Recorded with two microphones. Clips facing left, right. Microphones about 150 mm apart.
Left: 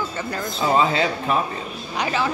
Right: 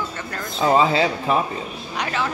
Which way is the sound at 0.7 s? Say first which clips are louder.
Right 2 dB; 30° right (ahead or behind).